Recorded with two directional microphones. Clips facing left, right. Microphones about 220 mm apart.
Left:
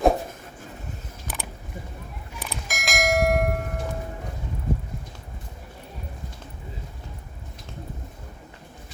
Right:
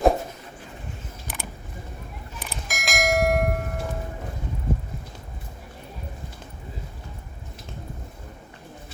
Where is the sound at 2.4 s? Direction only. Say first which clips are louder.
Left 1 dB; centre (ahead or behind).